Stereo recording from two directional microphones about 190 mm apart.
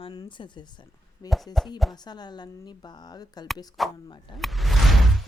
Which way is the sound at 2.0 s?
20° left (ahead or behind).